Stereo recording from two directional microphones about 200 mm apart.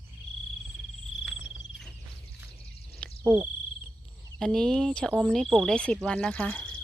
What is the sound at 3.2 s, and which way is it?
Speech, 15° right (ahead or behind).